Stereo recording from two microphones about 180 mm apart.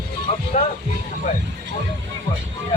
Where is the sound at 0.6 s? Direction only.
40° left (ahead or behind).